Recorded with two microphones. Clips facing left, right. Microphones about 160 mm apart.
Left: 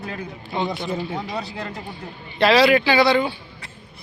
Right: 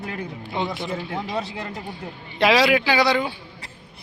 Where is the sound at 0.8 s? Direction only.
20° left (ahead or behind).